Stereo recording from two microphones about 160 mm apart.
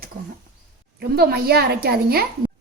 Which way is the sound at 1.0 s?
90° right.